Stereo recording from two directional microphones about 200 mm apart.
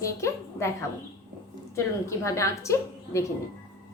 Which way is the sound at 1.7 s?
15° left (ahead or behind).